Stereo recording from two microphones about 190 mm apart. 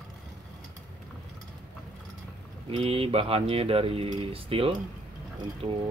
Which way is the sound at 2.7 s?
30° right (ahead or behind).